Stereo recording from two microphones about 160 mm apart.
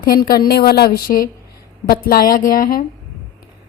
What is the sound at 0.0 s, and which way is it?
A woman's voice, 70° left (ahead or behind).